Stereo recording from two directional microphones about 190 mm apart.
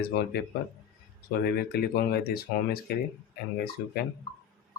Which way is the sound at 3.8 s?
55° left (ahead or behind).